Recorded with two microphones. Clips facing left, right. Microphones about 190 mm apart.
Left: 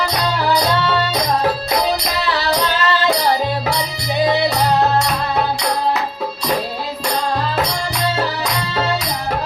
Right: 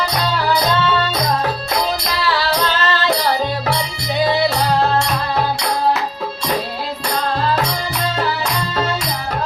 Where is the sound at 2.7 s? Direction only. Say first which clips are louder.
Left 1 dB; 15° left (ahead or behind).